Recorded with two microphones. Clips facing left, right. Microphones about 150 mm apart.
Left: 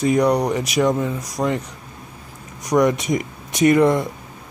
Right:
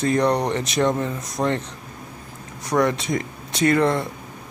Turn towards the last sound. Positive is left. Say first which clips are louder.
# left 4 dB
turn(degrees=15)  # may be behind; listen again after turning